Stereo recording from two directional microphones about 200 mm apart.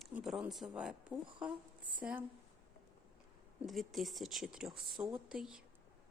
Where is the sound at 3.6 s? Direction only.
Centre (ahead or behind).